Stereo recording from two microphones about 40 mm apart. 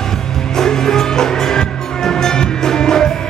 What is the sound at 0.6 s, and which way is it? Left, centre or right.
Music, centre.